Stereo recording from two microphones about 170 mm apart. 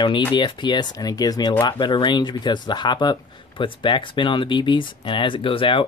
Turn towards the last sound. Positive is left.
turn(degrees=30)  # may be behind; listen again after turning